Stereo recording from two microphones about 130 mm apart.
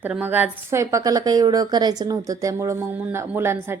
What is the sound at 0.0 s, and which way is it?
A woman's voice, 15° right (ahead or behind).